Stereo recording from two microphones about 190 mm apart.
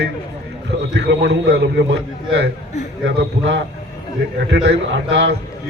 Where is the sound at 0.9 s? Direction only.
65° right (ahead or behind).